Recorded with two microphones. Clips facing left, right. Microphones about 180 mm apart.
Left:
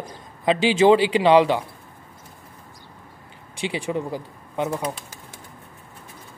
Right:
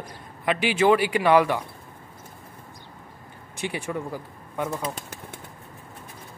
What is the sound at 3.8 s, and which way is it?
Speech, 20° left (ahead or behind).